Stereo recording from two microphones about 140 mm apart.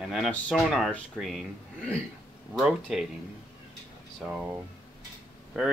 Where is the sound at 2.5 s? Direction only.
5° right (ahead or behind).